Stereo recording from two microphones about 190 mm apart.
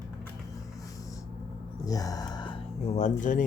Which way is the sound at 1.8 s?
20° left (ahead or behind).